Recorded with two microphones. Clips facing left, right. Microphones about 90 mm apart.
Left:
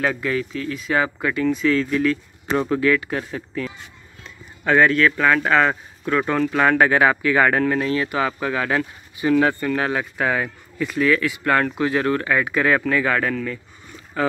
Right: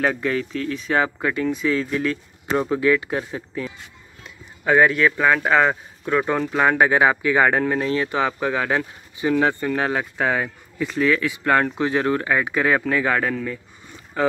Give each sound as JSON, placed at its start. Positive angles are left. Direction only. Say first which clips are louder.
{"t": 0.0, "sound": "speech", "louder": "right 1 dB", "side_deg": -35}
{"t": 1.5, "sound": "speech", "louder": "left 3 dB", "side_deg": -20}
{"t": 2.5, "sound": "speech", "louder": "even", "side_deg": -15}